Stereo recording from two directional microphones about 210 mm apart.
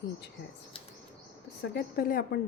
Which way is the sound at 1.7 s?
45° left (ahead or behind).